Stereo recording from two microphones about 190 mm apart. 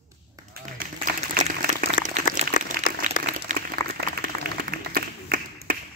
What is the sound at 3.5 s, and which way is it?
Applause, 40° right (ahead or behind).